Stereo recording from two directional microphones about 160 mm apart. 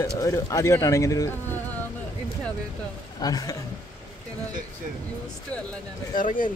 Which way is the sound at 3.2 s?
25° left (ahead or behind).